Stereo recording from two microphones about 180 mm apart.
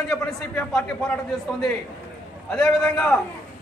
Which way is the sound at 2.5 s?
5° left (ahead or behind).